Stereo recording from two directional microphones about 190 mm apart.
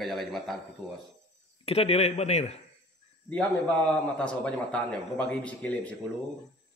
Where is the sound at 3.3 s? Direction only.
5° left (ahead or behind).